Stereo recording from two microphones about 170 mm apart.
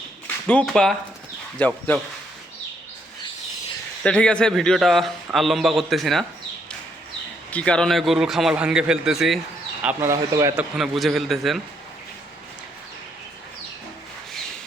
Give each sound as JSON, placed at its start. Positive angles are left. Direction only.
{"t": 0.4, "sound": "a man's voice", "side_deg": 5}
{"t": 4.0, "sound": "a man's voice", "side_deg": 5}
{"t": 7.5, "sound": "a man's voice", "side_deg": 5}
{"t": 9.8, "sound": "a man's voice", "side_deg": -15}
{"t": 10.8, "sound": "a man's voice", "side_deg": 0}